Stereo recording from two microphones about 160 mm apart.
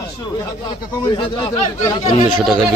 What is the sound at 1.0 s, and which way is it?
Speech, 30° left (ahead or behind).